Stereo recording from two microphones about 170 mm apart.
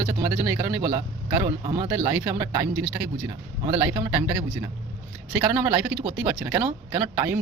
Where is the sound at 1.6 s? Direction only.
40° right (ahead or behind).